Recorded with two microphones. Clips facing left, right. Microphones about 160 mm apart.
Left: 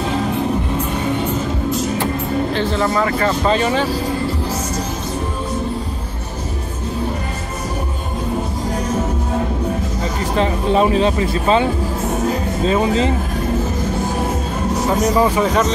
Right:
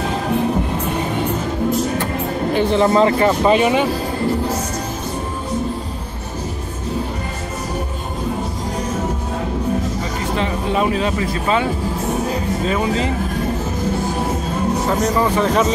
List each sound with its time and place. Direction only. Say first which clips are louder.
2.5 s speech: right 8 dB; 20° right (ahead or behind)
10.4 s speech: left 4 dB; 30° left (ahead or behind)
15.3 s speech: even; centre (ahead or behind)